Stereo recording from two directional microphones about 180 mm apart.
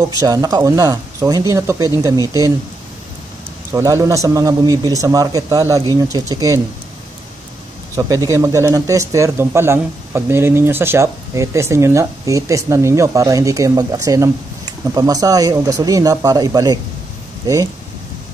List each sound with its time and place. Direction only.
0.2 s speech: 20° right (ahead or behind)
3.7 s a man's voice: 15° right (ahead or behind)
7.9 s a man's voice: 20° right (ahead or behind)